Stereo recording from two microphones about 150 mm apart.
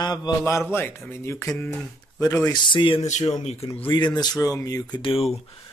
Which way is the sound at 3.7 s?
30° left (ahead or behind).